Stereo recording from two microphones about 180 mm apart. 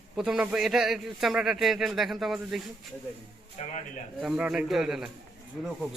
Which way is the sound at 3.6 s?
40° left (ahead or behind).